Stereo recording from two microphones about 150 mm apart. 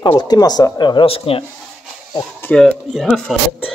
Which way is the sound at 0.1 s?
25° left (ahead or behind).